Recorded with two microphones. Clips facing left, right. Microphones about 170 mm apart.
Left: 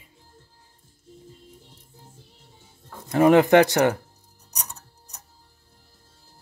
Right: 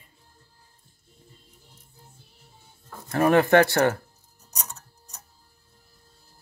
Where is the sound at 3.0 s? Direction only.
15° left (ahead or behind).